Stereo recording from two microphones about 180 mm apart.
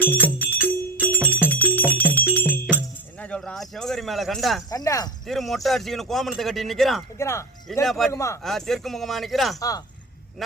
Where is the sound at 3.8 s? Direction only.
Centre (ahead or behind).